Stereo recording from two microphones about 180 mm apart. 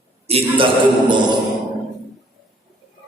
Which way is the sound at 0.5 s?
25° right (ahead or behind).